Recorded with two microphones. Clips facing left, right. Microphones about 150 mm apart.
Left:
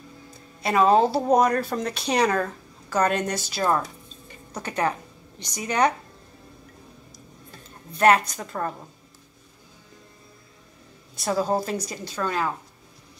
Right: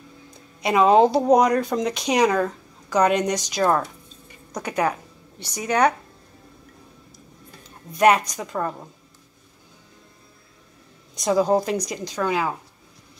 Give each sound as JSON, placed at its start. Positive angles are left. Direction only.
{"t": 0.6, "sound": "speech", "side_deg": -15}
{"t": 8.0, "sound": "speech", "side_deg": -10}
{"t": 11.1, "sound": "speech", "side_deg": -15}